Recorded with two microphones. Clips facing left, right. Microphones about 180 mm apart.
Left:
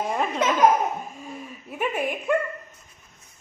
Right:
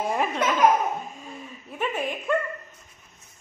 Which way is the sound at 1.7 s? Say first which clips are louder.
Left 2 dB; 10° left (ahead or behind).